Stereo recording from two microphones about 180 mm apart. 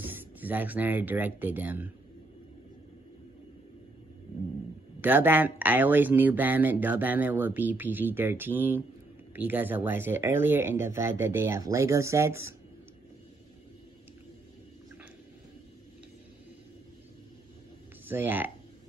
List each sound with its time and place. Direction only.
0.0 s speech: 10° right (ahead or behind)
5.0 s speech: 10° right (ahead or behind)
18.0 s speech: 10° right (ahead or behind)